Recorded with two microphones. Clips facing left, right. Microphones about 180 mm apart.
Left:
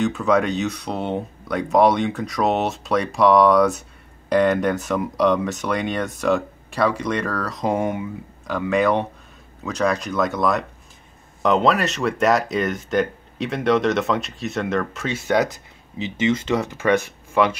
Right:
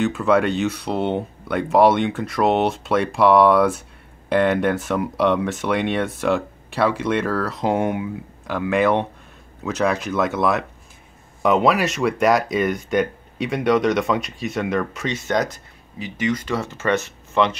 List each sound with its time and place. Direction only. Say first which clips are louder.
0.0 s speech: right 1 dB; centre (ahead or behind)
16.0 s speech: left 2 dB; 25° left (ahead or behind)